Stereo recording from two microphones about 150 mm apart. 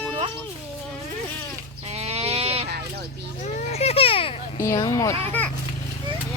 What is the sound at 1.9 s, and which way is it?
Goat, 45° right (ahead or behind).